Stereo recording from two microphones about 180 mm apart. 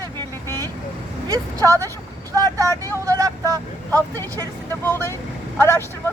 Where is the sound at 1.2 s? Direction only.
20° right (ahead or behind).